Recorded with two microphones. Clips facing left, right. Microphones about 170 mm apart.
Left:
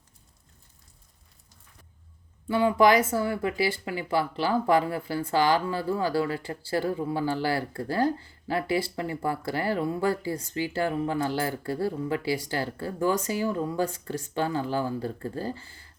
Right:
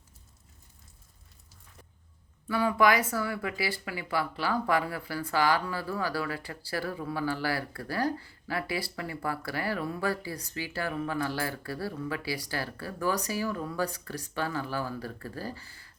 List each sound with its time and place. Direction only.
2.5 s speech: 25° left (ahead or behind)